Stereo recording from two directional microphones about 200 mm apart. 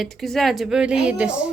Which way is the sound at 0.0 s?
Centre (ahead or behind).